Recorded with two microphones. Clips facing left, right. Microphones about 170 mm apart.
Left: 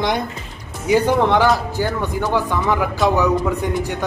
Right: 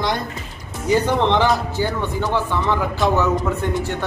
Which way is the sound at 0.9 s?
10° left (ahead or behind).